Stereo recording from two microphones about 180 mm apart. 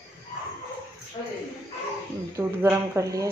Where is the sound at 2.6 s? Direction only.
15° right (ahead or behind).